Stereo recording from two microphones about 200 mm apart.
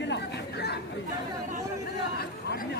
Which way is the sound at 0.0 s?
55° left (ahead or behind).